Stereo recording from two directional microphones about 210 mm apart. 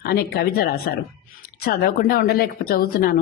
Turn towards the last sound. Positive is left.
turn(degrees=45)  # may be behind; listen again after turning